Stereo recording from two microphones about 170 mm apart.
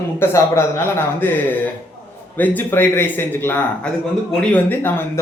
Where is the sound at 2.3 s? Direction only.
10° left (ahead or behind).